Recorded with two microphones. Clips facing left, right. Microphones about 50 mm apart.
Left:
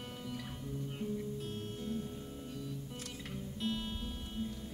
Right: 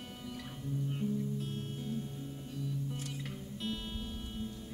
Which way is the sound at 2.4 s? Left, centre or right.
Centre.